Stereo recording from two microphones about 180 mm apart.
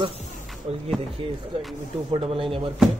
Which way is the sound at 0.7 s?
35° right (ahead or behind).